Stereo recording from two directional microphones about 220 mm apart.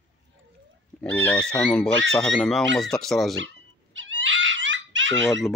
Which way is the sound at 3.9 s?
55° right (ahead or behind).